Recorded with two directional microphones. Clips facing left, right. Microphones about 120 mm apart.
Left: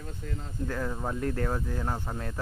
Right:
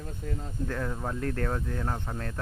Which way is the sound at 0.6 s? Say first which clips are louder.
Left 1 dB; 5° left (ahead or behind).